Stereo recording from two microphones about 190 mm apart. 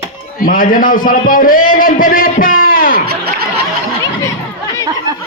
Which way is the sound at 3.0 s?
55° right (ahead or behind).